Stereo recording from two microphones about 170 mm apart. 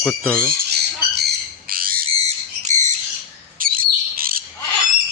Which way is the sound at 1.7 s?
60° right (ahead or behind).